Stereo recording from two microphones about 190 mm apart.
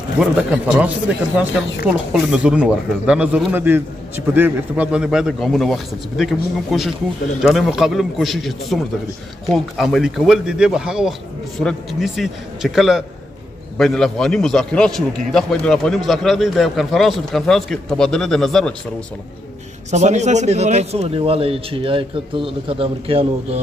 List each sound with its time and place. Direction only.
0.2 s a man's voice: 5° right (ahead or behind)
19.9 s speech: 35° right (ahead or behind)